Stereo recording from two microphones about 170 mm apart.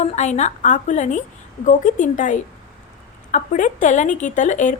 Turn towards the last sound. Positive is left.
turn(degrees=45)  # may be behind; listen again after turning